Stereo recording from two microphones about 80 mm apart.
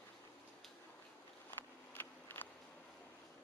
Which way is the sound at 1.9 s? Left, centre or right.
Left.